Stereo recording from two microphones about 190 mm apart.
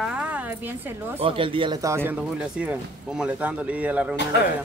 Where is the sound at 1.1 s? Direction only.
30° right (ahead or behind); by 4.1 s 5° right (ahead or behind).